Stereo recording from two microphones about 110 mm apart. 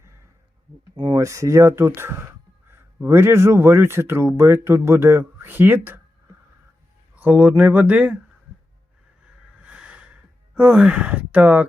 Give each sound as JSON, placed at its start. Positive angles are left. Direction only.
{"t": 0.9, "sound": "speech", "side_deg": -35}
{"t": 7.2, "sound": "speech", "side_deg": -15}
{"t": 9.6, "sound": "a sound", "side_deg": -10}
{"t": 10.5, "sound": "speech", "side_deg": -10}